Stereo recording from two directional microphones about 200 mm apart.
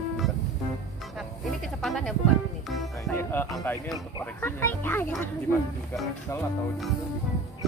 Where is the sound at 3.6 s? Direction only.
10° left (ahead or behind).